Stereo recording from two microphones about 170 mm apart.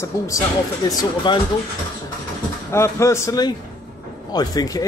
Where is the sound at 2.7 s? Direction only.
15° left (ahead or behind).